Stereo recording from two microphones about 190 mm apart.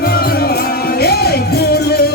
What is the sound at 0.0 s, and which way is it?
Music, 55° left (ahead or behind).